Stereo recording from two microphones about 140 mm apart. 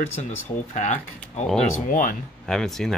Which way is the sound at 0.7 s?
60° left (ahead or behind).